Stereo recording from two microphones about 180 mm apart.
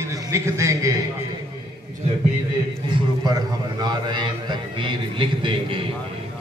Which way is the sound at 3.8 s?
25° right (ahead or behind).